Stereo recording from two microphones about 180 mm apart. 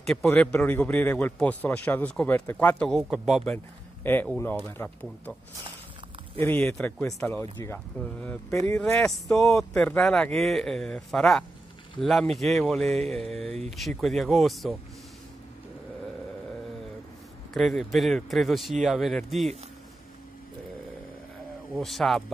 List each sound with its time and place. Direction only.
0.0 s a man's voice: 5° left (ahead or behind)
3.5 s a man's voice: 10° left (ahead or behind)
6.4 s a man's voice: 10° left (ahead or behind)
9.1 s speech: centre (ahead or behind)
13.5 s speech: 35° right (ahead or behind)
13.7 s speech: centre (ahead or behind)
17.6 s speech: centre (ahead or behind)
21.7 s speech: centre (ahead or behind)